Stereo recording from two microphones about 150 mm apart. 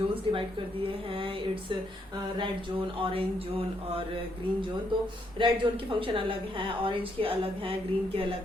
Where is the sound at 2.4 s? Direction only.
35° right (ahead or behind).